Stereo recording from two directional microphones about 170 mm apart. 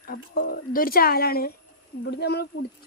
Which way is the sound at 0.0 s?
60° left (ahead or behind).